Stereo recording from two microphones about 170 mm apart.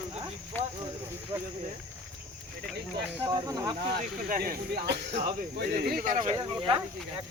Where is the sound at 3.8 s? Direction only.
65° right (ahead or behind).